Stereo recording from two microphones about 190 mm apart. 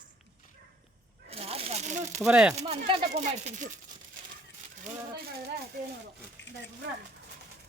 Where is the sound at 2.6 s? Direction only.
30° right (ahead or behind).